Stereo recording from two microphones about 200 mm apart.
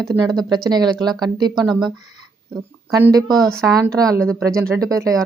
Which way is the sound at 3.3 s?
Centre (ahead or behind).